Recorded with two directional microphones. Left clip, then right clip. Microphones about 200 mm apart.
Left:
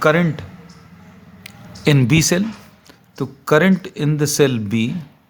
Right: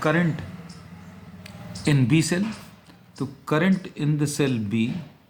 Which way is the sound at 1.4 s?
50° left (ahead or behind).